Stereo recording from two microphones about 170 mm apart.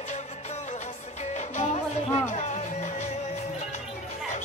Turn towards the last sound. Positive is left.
turn(degrees=45)  # may be behind; listen again after turning